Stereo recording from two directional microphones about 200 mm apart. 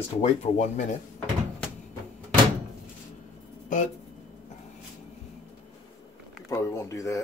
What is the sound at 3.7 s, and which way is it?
Speech, 40° left (ahead or behind).